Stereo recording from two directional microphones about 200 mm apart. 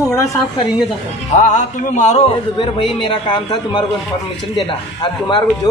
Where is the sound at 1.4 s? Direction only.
35° left (ahead or behind).